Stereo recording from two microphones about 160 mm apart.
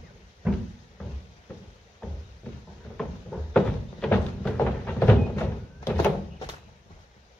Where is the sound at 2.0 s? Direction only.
5° left (ahead or behind).